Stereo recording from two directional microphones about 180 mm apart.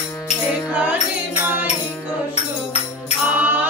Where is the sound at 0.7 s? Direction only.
10° right (ahead or behind).